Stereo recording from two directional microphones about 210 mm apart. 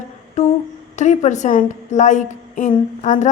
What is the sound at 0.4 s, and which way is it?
Humming, 30° left (ahead or behind).